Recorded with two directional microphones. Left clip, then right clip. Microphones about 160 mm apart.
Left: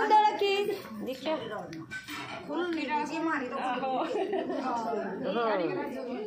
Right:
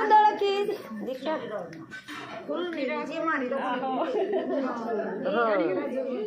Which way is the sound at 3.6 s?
35° left (ahead or behind).